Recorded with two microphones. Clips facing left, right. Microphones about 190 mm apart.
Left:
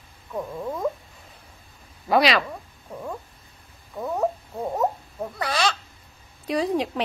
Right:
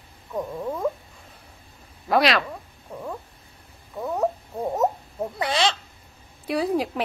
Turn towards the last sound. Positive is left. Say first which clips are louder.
# even
turn(degrees=-5)  # may be behind; listen again after turning